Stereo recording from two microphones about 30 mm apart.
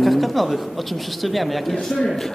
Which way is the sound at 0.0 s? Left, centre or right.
Centre.